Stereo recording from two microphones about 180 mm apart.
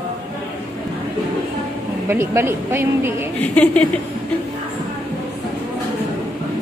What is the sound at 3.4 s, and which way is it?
Speech, 5° left (ahead or behind).